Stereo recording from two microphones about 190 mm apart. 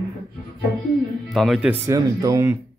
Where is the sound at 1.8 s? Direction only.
15° right (ahead or behind).